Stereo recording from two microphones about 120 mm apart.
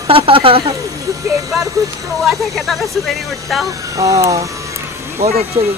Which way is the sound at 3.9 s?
30° right (ahead or behind).